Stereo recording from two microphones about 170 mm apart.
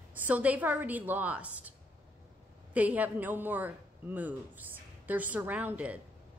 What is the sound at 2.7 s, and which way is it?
A woman's voice, 10° right (ahead or behind).